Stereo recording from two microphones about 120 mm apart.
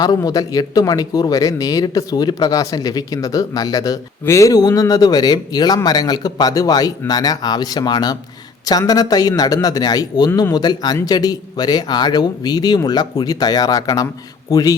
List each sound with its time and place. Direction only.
0.0 s speech: 30° left (ahead or behind)